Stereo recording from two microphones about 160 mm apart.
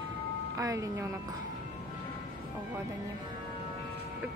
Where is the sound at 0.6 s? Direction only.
20° right (ahead or behind).